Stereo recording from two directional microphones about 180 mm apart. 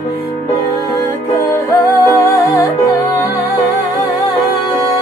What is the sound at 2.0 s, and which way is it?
Music, 20° left (ahead or behind).